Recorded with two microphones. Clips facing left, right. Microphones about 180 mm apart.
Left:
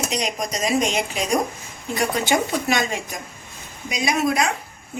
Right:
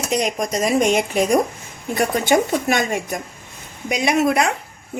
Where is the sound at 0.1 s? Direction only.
50° right (ahead or behind).